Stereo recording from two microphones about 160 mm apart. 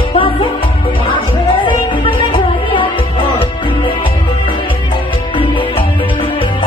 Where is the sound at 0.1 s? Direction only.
30° left (ahead or behind).